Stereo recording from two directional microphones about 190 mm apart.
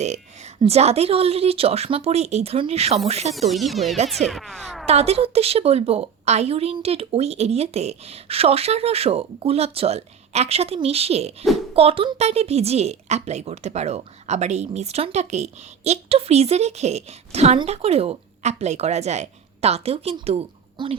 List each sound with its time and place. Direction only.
0.0 s a woman's voice: 35° right (ahead or behind)
3.5 s speech: centre (ahead or behind)
4.9 s a woman's voice: 30° right (ahead or behind)